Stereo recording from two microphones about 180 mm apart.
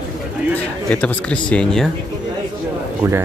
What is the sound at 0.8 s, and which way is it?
Speech, 5° left (ahead or behind).